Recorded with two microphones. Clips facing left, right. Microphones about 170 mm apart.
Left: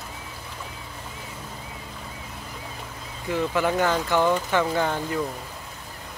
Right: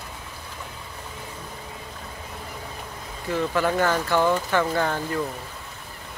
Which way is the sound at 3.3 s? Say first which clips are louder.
Even; 15° left (ahead or behind).